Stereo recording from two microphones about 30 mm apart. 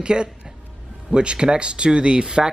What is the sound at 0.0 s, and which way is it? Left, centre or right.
Speech, right.